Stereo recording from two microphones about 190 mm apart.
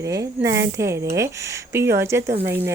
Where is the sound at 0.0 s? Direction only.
15° right (ahead or behind).